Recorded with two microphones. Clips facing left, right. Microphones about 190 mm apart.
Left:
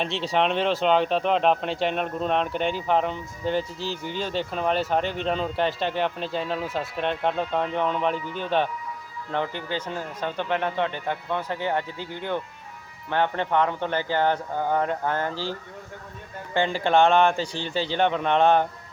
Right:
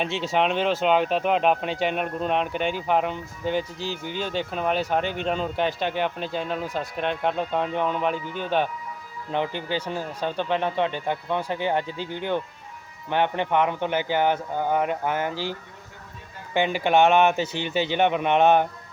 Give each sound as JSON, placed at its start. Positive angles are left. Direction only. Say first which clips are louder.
{"t": 0.0, "sound": "speech", "louder": "even", "side_deg": 0}
{"t": 9.3, "sound": "a man's voice", "louder": "right 2 dB", "side_deg": -20}
{"t": 16.6, "sound": "speech", "louder": "right 1 dB", "side_deg": -15}